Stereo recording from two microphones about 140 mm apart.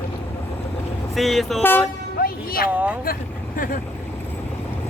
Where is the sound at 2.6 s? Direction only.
10° right (ahead or behind).